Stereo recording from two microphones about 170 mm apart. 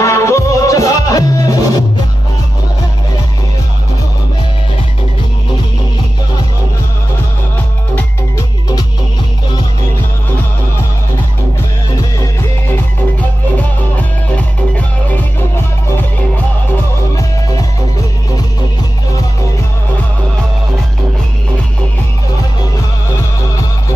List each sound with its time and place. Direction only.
0.0 s music: 15° left (ahead or behind)
7.9 s music: 20° left (ahead or behind)
13.9 s music: 10° left (ahead or behind)